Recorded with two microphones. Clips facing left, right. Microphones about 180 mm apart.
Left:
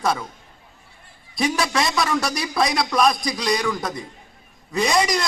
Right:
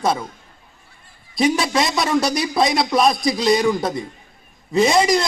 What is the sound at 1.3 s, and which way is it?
A man's voice, 25° right (ahead or behind).